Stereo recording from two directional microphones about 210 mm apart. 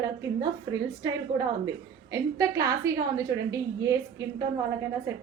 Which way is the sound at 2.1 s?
15° right (ahead or behind).